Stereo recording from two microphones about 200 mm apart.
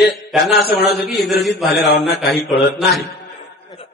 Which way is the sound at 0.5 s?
50° left (ahead or behind).